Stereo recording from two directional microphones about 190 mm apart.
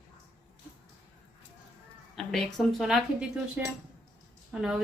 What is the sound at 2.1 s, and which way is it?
Speech, centre (ahead or behind).